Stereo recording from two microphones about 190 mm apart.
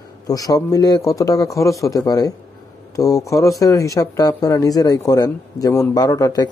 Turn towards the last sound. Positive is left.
turn(degrees=20)  # may be behind; listen again after turning